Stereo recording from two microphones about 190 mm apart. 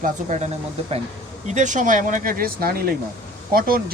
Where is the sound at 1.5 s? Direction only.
40° right (ahead or behind).